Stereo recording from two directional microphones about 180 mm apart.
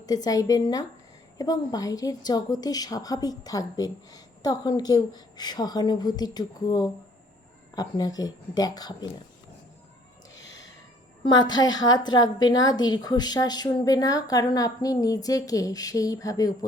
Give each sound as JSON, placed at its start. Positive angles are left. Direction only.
{"t": 0.0, "sound": "a woman's voice", "side_deg": 20}
{"t": 10.3, "sound": "gasp", "side_deg": 90}
{"t": 11.2, "sound": "a woman's voice", "side_deg": 25}